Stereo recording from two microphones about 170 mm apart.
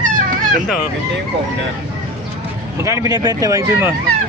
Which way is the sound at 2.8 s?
20° right (ahead or behind).